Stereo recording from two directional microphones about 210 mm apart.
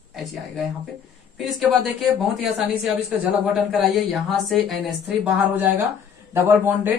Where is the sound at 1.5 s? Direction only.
Centre (ahead or behind).